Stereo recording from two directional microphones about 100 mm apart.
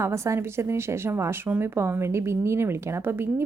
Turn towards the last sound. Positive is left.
turn(degrees=-25)  # may be behind; listen again after turning